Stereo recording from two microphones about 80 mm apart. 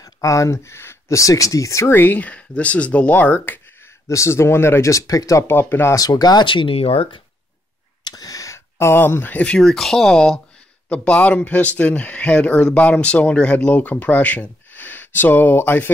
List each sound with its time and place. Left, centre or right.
0.0 s speech: left
2.0 s speech: left
4.1 s speech: left
5.5 s speech: left
5.9 s speech: left
8.0 s a sound: left; by 9.6 s centre
9.6 s speech: centre; by 15.9 s left